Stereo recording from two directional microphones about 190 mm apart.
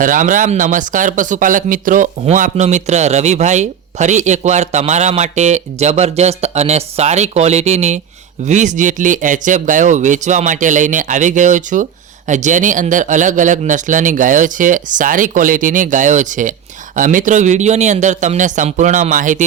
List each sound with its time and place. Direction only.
0.0 s speech: 45° right (ahead or behind)